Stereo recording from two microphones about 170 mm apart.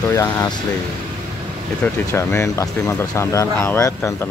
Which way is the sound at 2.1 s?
15° left (ahead or behind).